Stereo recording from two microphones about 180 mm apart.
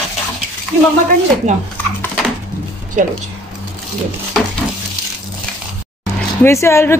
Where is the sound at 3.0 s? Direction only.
45° right (ahead or behind).